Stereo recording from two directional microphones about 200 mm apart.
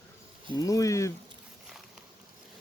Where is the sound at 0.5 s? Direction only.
15° left (ahead or behind).